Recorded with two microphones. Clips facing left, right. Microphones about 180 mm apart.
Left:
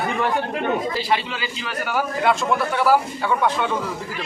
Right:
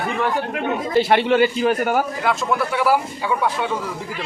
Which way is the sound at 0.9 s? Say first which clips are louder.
Right 9 dB; 60° right (ahead or behind).